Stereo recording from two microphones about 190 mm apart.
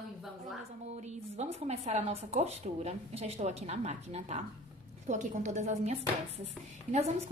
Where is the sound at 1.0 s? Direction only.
35° right (ahead or behind).